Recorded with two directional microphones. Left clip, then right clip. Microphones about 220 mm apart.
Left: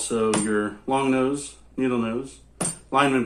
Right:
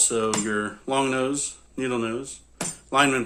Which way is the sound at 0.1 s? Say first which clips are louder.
Left 2 dB; 55° right (ahead or behind).